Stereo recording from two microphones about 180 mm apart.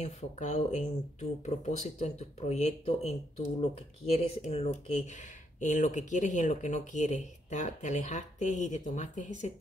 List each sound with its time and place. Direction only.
0.0 s speech: 40° left (ahead or behind)